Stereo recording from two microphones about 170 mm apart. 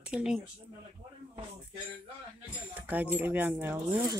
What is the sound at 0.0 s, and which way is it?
Speech, 5° right (ahead or behind).